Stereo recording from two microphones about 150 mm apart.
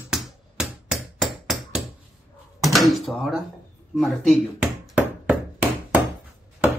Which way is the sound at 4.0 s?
Centre (ahead or behind).